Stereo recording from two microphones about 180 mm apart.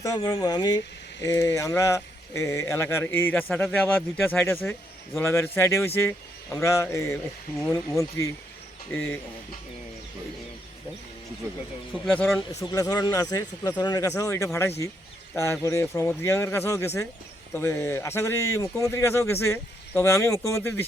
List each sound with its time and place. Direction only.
0.0 s speech: 20° left (ahead or behind)
12.0 s speech: 5° left (ahead or behind)